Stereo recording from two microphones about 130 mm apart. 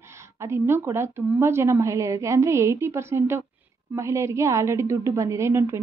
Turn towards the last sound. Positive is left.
turn(degrees=-20)  # may be behind; listen again after turning